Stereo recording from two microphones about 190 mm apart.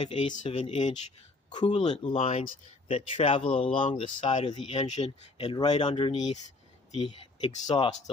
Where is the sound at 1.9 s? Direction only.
35° left (ahead or behind).